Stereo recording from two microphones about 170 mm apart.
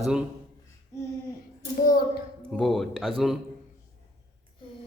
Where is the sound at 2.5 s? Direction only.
Centre (ahead or behind).